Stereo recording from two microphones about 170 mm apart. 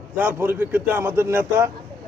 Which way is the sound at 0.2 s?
10° right (ahead or behind).